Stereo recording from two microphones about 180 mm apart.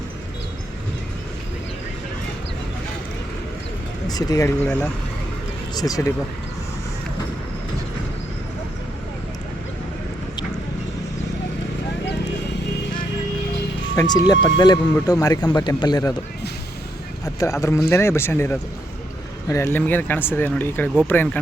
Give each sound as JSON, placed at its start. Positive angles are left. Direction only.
{"t": 4.0, "sound": "speech", "side_deg": 20}
{"t": 13.9, "sound": "speech", "side_deg": 20}
{"t": 17.2, "sound": "speech", "side_deg": 15}